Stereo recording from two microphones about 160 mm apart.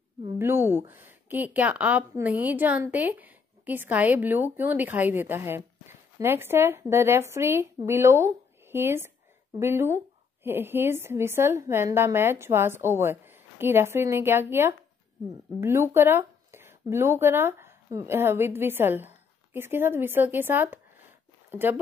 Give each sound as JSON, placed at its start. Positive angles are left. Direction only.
{"t": 0.4, "sound": "a woman's voice", "side_deg": -15}